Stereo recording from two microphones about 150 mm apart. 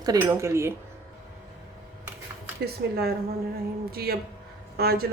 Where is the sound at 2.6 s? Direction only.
90° right.